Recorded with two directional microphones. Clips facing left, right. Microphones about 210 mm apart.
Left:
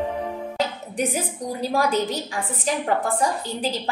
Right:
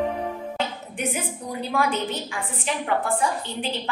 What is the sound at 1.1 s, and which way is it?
A woman's voice, 40° left (ahead or behind).